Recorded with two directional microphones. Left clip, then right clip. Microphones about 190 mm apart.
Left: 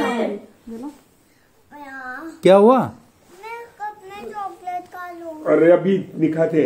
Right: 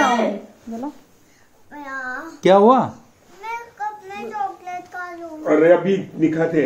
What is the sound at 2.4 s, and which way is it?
Speech, 20° left (ahead or behind).